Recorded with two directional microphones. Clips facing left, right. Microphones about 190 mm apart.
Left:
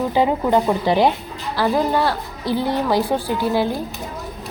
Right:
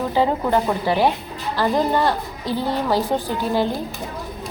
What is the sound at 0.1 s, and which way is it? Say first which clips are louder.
A woman's voice: left 1 dB; 15° left (ahead or behind).